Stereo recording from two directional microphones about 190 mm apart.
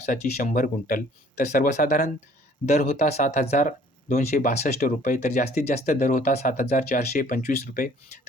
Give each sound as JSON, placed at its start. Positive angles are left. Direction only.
{"t": 0.0, "sound": "speech", "side_deg": 40}
{"t": 2.8, "sound": "speech", "side_deg": 35}